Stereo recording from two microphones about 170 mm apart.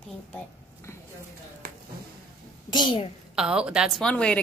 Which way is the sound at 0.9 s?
15° left (ahead or behind).